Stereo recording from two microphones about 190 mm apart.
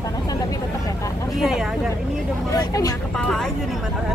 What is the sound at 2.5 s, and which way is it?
Vehicle, 20° left (ahead or behind).